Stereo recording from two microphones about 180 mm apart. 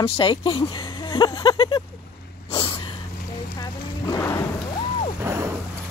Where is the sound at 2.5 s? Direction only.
30° left (ahead or behind).